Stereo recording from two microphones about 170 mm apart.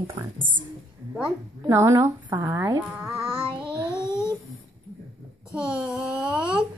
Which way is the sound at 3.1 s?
5° right (ahead or behind).